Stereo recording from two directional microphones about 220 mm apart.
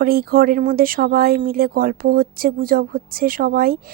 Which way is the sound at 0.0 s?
45° right (ahead or behind).